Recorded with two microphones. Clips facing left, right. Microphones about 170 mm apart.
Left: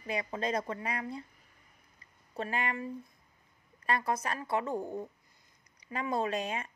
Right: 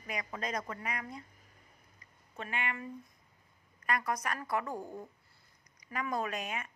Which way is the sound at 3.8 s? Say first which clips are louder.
Left 2 dB; 30° left (ahead or behind).